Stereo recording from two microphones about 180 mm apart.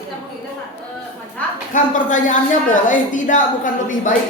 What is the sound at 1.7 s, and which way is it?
A woman's voice, 45° left (ahead or behind).